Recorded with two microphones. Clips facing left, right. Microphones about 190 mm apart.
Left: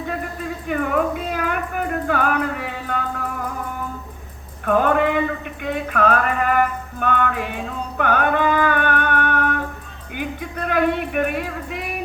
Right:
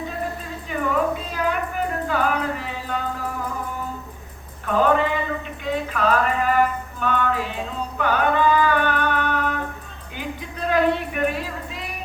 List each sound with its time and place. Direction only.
0.7 s a sound: 55° left (ahead or behind)
4.6 s female singing: 55° left (ahead or behind)
5.6 s music: 55° left (ahead or behind)